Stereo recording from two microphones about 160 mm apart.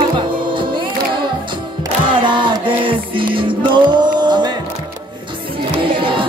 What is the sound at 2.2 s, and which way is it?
Music, 30° right (ahead or behind).